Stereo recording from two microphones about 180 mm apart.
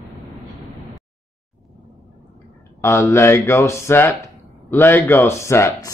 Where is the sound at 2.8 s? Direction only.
15° left (ahead or behind).